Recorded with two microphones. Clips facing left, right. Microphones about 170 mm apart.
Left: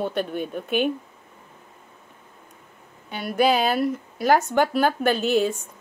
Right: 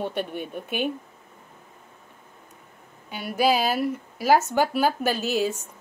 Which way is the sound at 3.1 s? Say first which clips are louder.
Left 2 dB; 10° right (ahead or behind).